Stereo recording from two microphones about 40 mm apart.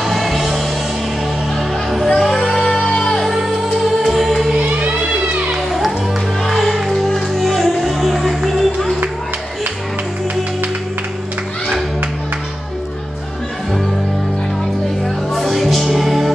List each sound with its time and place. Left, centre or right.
0.0 s music: centre
1.6 s music: centre
2.0 s a sound: centre
2.9 s music: centre
4.0 s music: centre
4.6 s music: right
5.3 s children playing: right
5.7 s music: centre
15.3 s music: centre